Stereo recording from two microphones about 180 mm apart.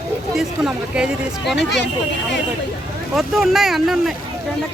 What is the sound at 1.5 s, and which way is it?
Speech, 75° left (ahead or behind).